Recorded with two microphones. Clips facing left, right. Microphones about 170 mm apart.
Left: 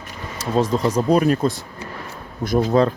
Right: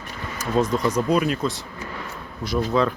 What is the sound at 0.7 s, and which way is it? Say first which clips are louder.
Speech: left 3 dB; 25° left (ahead or behind).